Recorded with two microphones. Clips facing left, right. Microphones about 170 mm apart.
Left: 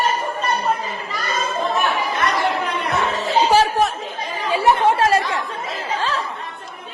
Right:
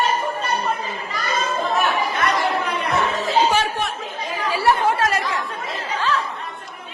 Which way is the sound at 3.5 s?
40° left (ahead or behind).